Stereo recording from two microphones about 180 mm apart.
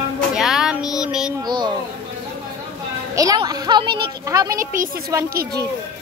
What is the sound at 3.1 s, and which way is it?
Speech, 20° right (ahead or behind).